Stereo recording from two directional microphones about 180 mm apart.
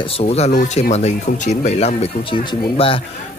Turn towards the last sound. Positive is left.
turn(degrees=30)  # may be behind; listen again after turning